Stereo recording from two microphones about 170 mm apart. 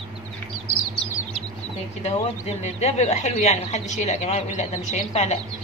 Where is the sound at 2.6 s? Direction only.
40° left (ahead or behind).